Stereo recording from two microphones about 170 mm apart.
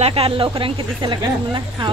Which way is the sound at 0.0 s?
35° right (ahead or behind).